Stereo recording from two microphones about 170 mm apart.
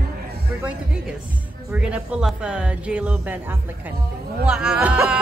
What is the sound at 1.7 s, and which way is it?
Speech, 5° right (ahead or behind).